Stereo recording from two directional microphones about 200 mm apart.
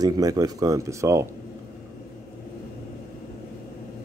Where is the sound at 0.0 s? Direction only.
15° right (ahead or behind).